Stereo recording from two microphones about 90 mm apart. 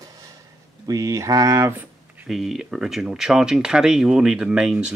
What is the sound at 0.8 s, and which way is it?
Speech, 40° right (ahead or behind).